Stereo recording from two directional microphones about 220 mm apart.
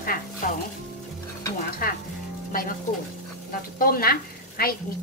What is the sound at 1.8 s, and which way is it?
Speech, 40° left (ahead or behind).